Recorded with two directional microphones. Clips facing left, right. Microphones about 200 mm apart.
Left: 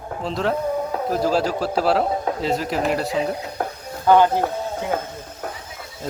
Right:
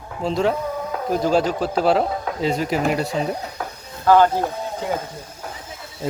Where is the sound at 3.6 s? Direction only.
50° left (ahead or behind).